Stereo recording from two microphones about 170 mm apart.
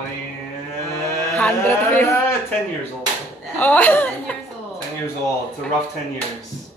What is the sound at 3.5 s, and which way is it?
Speech, 10° left (ahead or behind).